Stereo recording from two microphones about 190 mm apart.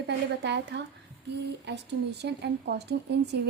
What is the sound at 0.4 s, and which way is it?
A woman's voice, 65° right (ahead or behind).